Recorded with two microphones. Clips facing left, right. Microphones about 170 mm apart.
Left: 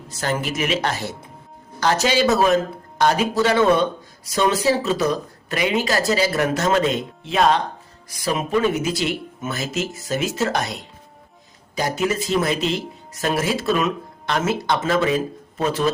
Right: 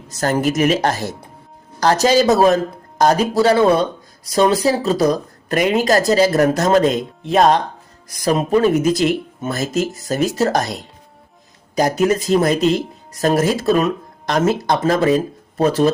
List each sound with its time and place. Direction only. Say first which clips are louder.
0.1 s speech: right 7 dB; 40° right (ahead or behind)